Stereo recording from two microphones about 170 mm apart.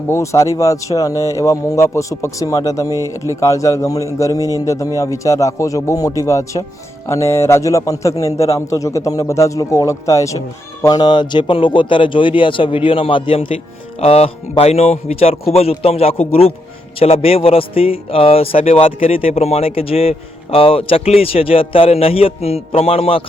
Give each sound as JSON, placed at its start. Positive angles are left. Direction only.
{"t": 0.1, "sound": "speech", "side_deg": 15}
{"t": 2.9, "sound": "speech", "side_deg": -20}
{"t": 3.4, "sound": "a man's voice", "side_deg": 20}